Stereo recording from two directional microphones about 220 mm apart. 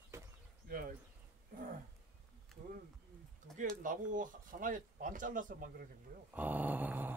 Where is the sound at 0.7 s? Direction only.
40° right (ahead or behind).